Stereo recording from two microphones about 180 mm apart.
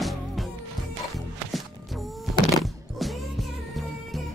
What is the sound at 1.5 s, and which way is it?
Music, centre (ahead or behind).